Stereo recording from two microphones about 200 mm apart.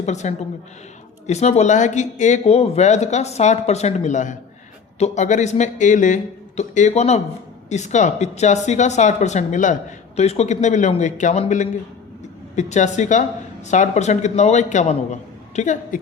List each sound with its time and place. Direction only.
0.0 s speech: 35° left (ahead or behind)